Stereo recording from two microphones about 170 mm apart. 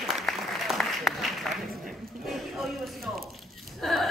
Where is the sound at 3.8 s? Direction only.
Centre (ahead or behind).